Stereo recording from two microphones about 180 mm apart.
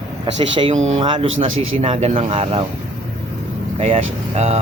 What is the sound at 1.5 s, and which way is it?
Speech, 90° right.